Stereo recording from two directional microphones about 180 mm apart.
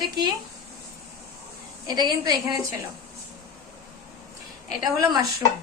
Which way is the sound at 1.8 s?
20° right (ahead or behind).